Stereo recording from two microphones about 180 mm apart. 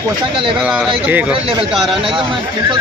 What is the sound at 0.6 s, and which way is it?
Speech, 5° right (ahead or behind).